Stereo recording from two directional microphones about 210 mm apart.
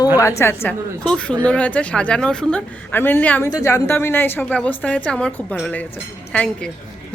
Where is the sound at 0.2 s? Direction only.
15° left (ahead or behind).